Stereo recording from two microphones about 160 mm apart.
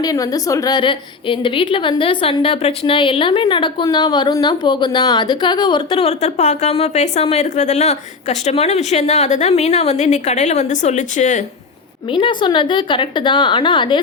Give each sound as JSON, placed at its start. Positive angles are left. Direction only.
{"t": 0.0, "sound": "a woman's voice", "side_deg": 25}
{"t": 12.0, "sound": "a woman's voice", "side_deg": 30}